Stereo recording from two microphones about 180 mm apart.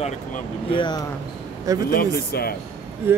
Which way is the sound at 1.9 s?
55° left (ahead or behind).